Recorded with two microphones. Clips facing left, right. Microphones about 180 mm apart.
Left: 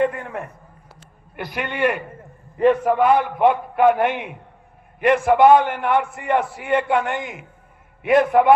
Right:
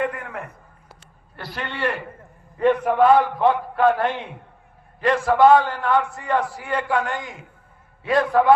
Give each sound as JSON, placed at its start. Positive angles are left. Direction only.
{"t": 0.0, "sound": "a sound", "side_deg": 25}
{"t": 1.4, "sound": "a man's voice", "side_deg": 15}
{"t": 3.0, "sound": "a man's voice", "side_deg": 20}